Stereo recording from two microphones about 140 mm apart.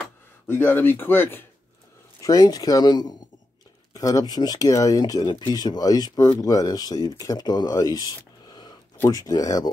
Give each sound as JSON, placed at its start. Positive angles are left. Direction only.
{"t": 0.5, "sound": "speech", "side_deg": 15}
{"t": 2.2, "sound": "speech", "side_deg": 25}
{"t": 8.5, "sound": "a sound", "side_deg": 30}
{"t": 9.0, "sound": "speech", "side_deg": 25}